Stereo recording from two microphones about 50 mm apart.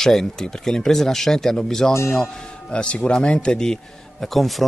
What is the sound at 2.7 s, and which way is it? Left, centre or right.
A man's voice, centre.